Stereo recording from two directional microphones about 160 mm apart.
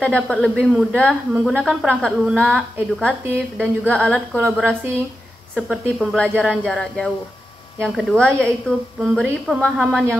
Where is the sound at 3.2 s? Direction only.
10° right (ahead or behind).